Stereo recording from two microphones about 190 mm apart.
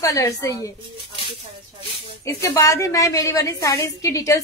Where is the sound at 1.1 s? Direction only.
25° right (ahead or behind).